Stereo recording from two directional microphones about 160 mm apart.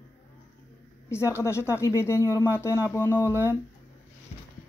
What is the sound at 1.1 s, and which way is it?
Speech, 15° left (ahead or behind).